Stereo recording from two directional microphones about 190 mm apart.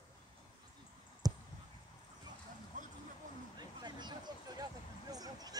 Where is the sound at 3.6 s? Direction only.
25° right (ahead or behind).